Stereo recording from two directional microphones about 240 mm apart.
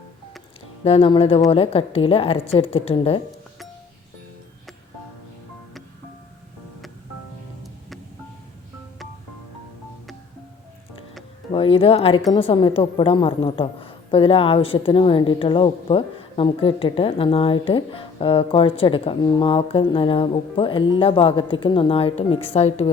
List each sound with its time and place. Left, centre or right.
0.9 s a woman's voice: left
11.5 s a woman's voice: left